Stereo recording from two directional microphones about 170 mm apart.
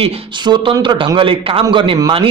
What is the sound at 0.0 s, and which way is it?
A man's voice, 30° right (ahead or behind).